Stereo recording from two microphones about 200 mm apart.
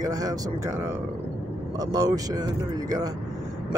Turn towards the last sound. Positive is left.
turn(degrees=-20)  # may be behind; listen again after turning